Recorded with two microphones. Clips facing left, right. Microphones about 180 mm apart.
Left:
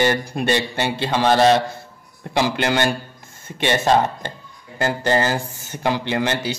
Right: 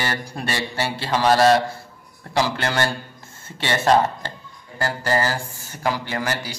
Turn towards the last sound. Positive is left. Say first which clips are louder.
# left 5 dB
turn(degrees=25)  # may be behind; listen again after turning